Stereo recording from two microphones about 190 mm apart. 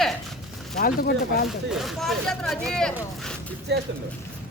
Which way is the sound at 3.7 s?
65° right (ahead or behind).